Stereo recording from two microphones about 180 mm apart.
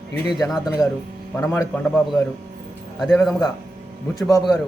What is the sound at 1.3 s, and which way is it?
Speech, 10° left (ahead or behind).